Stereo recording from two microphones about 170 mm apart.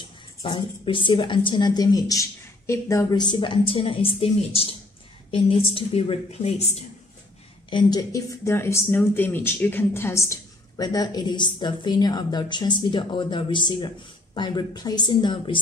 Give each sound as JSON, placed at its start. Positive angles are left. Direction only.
{"t": 0.4, "sound": "a woman's voice", "side_deg": 30}
{"t": 7.7, "sound": "speech", "side_deg": 20}